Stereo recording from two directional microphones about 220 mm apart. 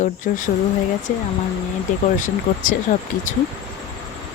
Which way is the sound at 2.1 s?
35° left (ahead or behind).